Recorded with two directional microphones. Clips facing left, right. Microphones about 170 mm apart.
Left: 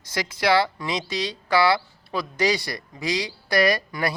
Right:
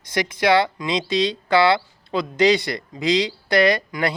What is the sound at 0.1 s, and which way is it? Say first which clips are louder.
Speech: right 3 dB; 20° right (ahead or behind).